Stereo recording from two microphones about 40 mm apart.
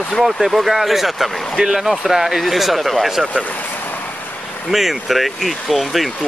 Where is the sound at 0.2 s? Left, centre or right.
Centre.